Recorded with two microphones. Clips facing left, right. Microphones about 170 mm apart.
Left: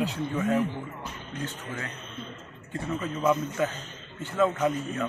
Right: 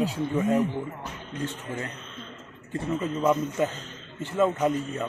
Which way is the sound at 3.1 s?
Centre (ahead or behind).